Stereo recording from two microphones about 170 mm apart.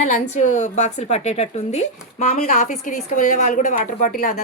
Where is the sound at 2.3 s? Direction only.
55° left (ahead or behind).